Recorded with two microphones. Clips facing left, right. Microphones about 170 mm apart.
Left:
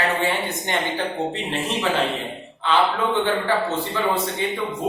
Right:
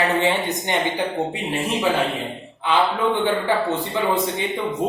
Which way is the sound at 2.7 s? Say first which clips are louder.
Even; 10° right (ahead or behind).